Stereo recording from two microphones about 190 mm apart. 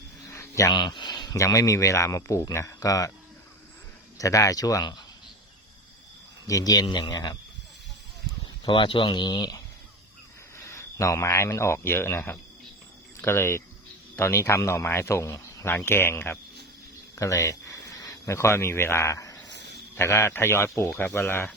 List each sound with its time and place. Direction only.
0.3 s speech: 15° left (ahead or behind)
4.2 s speech: 15° left (ahead or behind)
6.5 s speech: 20° left (ahead or behind)
8.6 s speech: 25° left (ahead or behind)
10.6 s speech: 15° left (ahead or behind)
19.5 s a sound: 65° right (ahead or behind)
20.0 s speech: 15° left (ahead or behind)